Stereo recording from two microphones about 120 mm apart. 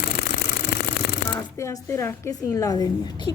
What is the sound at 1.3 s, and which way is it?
A woman's voice, 25° left (ahead or behind).